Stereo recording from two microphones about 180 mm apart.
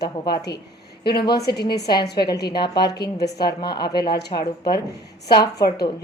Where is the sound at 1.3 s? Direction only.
65° left (ahead or behind).